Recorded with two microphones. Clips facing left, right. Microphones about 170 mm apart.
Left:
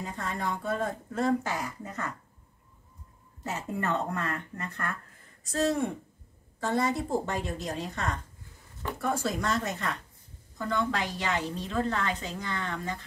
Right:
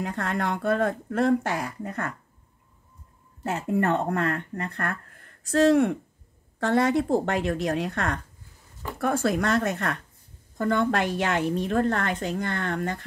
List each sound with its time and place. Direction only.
0.0 s speech: 70° right (ahead or behind)
3.4 s speech: 60° right (ahead or behind)